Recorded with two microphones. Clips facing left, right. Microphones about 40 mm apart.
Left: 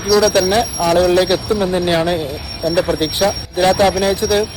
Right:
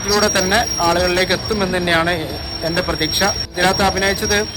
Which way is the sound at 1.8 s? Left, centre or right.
Right.